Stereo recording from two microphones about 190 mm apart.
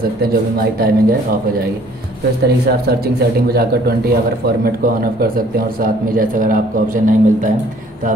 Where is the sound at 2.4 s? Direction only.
55° right (ahead or behind).